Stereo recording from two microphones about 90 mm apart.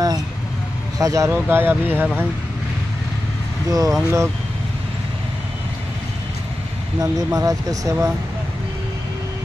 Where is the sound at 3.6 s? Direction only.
40° right (ahead or behind).